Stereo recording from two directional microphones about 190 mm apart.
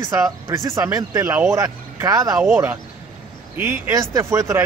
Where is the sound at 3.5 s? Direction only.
10° right (ahead or behind).